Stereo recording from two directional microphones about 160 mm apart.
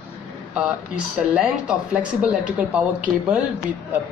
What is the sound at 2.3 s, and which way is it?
Speech, 5° right (ahead or behind).